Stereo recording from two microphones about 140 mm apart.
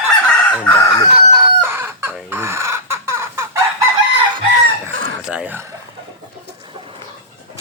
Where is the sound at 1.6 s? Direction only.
15° right (ahead or behind).